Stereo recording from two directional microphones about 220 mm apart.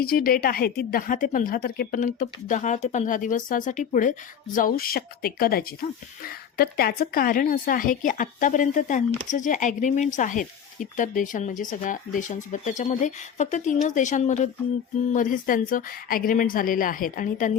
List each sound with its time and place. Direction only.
0.0 s a woman's voice: 40° left (ahead or behind)